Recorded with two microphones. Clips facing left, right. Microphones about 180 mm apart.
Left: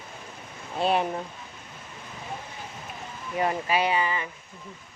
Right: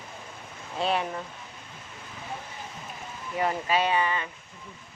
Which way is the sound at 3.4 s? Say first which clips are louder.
Left 1 dB; 15° left (ahead or behind).